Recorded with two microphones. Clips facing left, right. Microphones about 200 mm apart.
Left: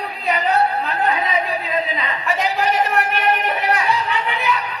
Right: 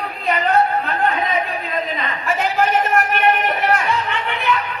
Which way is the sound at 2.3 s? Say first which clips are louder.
Right 2 dB; 35° left (ahead or behind).